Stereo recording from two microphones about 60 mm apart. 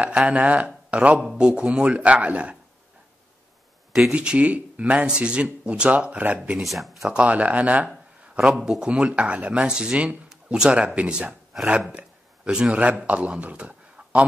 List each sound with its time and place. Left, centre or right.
0.0 s speech: centre
4.1 s speech: centre
6.5 s speech: centre
7.1 s speech: right
8.4 s speech: centre
8.6 s speech: centre